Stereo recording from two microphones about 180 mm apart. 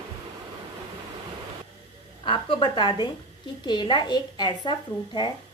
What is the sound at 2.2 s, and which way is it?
A woman's voice, 30° left (ahead or behind).